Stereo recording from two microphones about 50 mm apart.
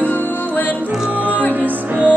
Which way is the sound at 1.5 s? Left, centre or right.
Right.